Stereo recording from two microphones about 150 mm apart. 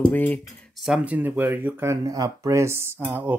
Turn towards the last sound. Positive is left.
turn(degrees=-10)  # may be behind; listen again after turning